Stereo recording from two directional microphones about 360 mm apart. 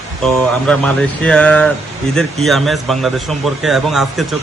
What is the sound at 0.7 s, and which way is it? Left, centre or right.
A man's voice, centre.